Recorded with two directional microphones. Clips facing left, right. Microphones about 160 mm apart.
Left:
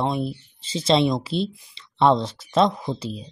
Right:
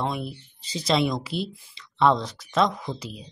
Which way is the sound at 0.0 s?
25° left (ahead or behind).